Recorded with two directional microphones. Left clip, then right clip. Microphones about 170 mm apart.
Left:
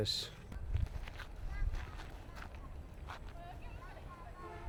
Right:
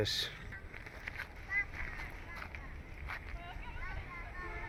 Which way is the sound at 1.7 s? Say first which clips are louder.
Right 7 dB; 5° right (ahead or behind).